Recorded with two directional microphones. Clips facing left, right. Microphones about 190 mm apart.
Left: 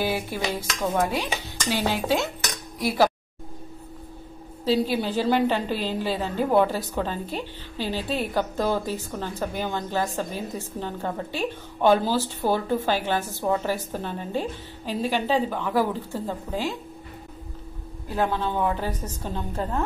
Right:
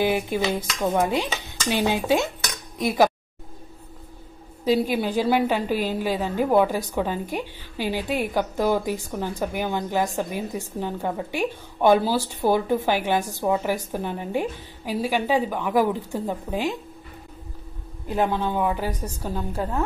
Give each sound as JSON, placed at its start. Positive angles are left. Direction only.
{"t": 0.0, "sound": "a woman's voice", "side_deg": -20}
{"t": 4.6, "sound": "a woman's voice", "side_deg": -15}
{"t": 18.0, "sound": "a woman's voice", "side_deg": -15}